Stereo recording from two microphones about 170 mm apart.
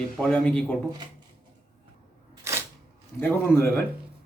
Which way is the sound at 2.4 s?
15° right (ahead or behind).